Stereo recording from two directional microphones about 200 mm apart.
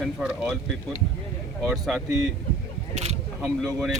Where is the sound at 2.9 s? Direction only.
35° right (ahead or behind).